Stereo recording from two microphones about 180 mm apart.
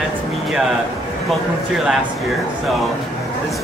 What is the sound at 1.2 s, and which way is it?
Speech, centre (ahead or behind).